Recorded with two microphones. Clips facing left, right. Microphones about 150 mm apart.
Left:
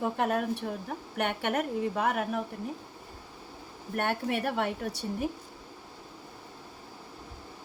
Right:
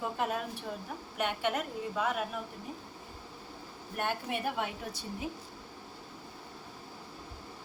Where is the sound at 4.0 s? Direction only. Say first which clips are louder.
Left 4 dB; 65° left (ahead or behind).